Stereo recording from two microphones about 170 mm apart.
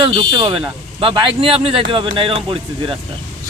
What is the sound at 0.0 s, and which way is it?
A man's voice, 25° right (ahead or behind).